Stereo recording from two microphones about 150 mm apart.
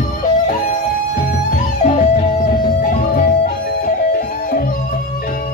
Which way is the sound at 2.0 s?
60° left (ahead or behind).